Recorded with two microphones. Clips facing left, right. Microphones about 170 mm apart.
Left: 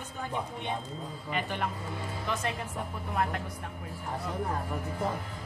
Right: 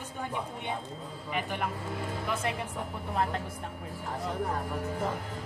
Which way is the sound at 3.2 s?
30° right (ahead or behind).